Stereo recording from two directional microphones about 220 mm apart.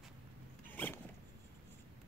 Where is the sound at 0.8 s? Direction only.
10° left (ahead or behind).